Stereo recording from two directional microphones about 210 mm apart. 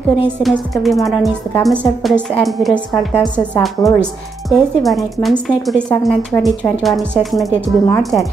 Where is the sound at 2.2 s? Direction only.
Centre (ahead or behind).